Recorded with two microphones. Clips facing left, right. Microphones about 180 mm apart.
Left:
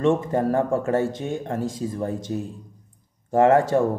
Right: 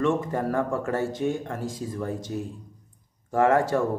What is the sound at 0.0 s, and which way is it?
Speech, 25° left (ahead or behind).